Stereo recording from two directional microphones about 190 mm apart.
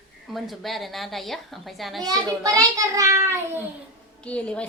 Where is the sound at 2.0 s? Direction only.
20° right (ahead or behind).